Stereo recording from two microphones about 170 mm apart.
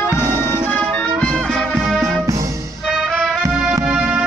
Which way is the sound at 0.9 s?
5° left (ahead or behind).